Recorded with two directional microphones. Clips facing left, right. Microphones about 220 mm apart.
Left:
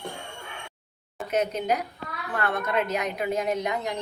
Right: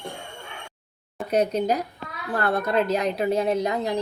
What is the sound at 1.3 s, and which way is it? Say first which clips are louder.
Speech: right 4 dB; 35° right (ahead or behind).